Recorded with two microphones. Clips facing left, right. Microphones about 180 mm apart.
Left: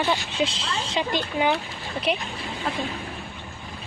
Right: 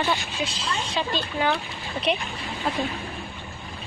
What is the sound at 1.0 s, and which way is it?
Speech, 15° left (ahead or behind).